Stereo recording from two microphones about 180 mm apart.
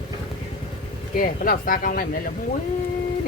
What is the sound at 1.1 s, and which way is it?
Speech, 50° left (ahead or behind).